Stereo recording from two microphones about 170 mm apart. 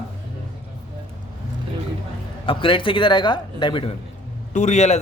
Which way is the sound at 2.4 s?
30° left (ahead or behind).